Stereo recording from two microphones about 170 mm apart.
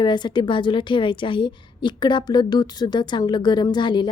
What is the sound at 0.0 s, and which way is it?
A woman's voice, 25° left (ahead or behind).